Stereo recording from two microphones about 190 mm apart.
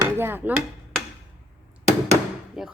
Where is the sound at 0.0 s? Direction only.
10° right (ahead or behind).